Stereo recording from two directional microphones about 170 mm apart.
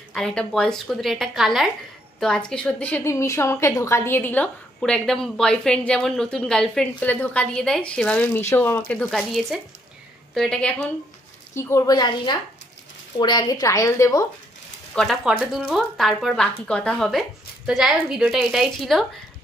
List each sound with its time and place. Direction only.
0.1 s a woman's voice: 5° left (ahead or behind)
9.1 s a woman's voice: centre (ahead or behind)
11.5 s a woman's voice: 20° left (ahead or behind)
15.0 s a woman's voice: centre (ahead or behind)